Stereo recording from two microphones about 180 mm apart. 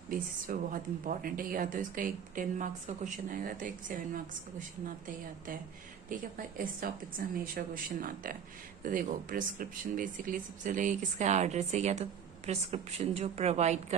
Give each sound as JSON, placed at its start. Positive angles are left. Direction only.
{"t": 0.1, "sound": "a woman's voice", "side_deg": -50}